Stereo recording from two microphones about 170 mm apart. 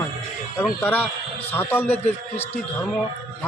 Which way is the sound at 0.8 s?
10° left (ahead or behind).